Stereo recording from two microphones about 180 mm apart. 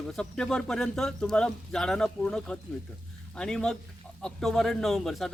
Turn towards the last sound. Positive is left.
turn(degrees=0)  # may be behind; listen again after turning